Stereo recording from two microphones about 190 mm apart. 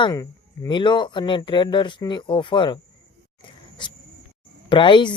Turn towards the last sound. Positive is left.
turn(degrees=25)  # may be behind; listen again after turning